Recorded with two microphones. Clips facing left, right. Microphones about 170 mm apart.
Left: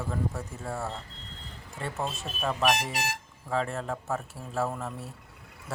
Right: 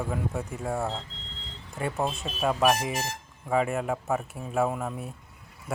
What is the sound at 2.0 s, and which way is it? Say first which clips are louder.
Speech: right 3 dB; 15° right (ahead or behind).